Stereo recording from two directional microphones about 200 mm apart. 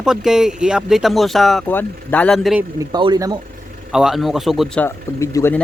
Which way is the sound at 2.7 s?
20° right (ahead or behind).